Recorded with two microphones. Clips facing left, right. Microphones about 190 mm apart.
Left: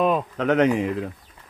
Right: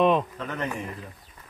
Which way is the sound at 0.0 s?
5° left (ahead or behind).